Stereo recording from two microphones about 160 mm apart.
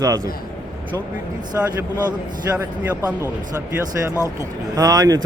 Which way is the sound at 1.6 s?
15° right (ahead or behind).